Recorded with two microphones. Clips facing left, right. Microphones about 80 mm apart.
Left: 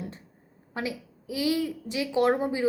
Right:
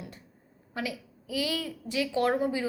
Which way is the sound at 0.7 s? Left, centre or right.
Left.